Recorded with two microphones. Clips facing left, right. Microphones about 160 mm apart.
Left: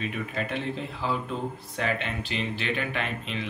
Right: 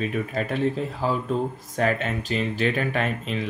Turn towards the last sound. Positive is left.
turn(degrees=-40)  # may be behind; listen again after turning